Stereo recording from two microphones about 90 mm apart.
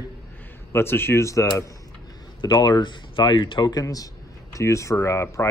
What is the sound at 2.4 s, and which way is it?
A man's voice, 50° left (ahead or behind).